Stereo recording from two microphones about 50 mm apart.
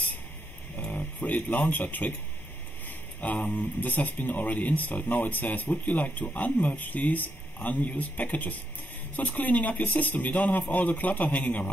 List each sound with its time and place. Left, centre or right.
0.9 s speech: left
3.2 s a man's voice: left